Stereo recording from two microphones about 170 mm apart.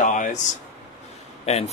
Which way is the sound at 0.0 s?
50° left (ahead or behind).